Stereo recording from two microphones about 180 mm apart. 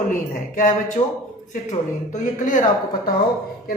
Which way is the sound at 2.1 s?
45° left (ahead or behind).